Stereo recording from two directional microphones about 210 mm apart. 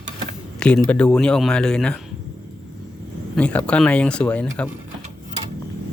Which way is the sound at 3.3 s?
5° left (ahead or behind).